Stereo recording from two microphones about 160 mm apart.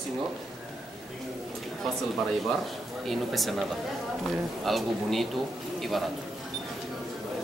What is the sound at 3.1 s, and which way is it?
Speech, centre (ahead or behind).